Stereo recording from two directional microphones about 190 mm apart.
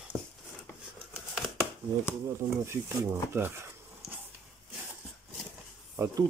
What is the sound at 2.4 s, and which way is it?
Speech, 15° right (ahead or behind).